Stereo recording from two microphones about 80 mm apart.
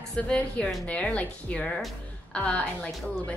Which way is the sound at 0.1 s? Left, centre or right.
Centre.